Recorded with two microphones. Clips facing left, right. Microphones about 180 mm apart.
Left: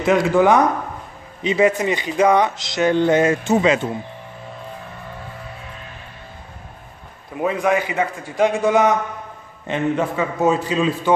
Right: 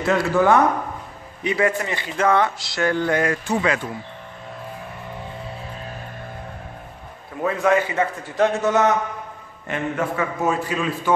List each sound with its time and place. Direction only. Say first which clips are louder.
0.0 s a man's voice: left 3 dB; 15° left (ahead or behind)
7.4 s a man's voice: even; 15° left (ahead or behind)